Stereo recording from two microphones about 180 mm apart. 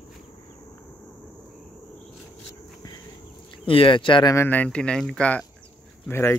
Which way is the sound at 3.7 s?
30° left (ahead or behind).